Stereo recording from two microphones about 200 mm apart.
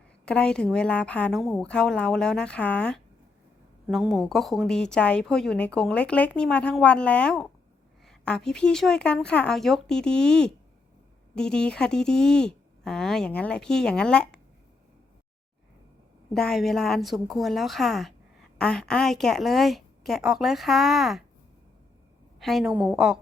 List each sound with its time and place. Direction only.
0.3 s a woman's voice: 5° left (ahead or behind)
16.3 s a woman's voice: centre (ahead or behind)
22.4 s a woman's voice: centre (ahead or behind)